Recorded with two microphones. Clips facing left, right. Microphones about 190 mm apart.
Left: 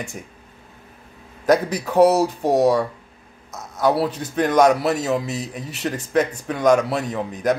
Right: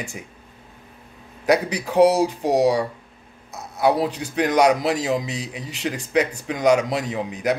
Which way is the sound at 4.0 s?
10° right (ahead or behind).